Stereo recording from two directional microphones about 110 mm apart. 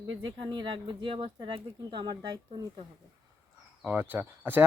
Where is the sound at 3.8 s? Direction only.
15° right (ahead or behind).